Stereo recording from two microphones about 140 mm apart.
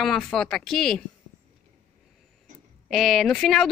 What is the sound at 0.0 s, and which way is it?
A woman's voice, 5° left (ahead or behind).